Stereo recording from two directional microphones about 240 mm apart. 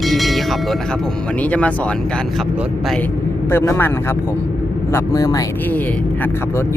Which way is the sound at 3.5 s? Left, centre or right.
Centre.